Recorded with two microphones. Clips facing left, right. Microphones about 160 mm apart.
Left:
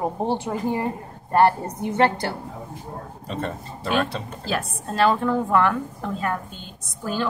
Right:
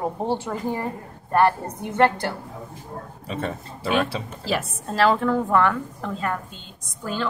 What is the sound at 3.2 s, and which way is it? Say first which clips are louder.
A woman's voice: even; centre (ahead or behind).